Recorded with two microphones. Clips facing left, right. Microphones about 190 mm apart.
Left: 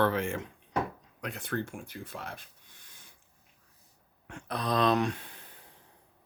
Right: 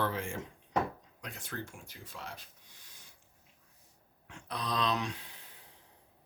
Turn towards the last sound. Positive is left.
turn(degrees=55)  # may be behind; listen again after turning